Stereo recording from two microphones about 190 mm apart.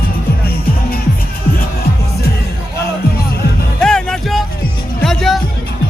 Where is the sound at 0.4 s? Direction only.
50° left (ahead or behind).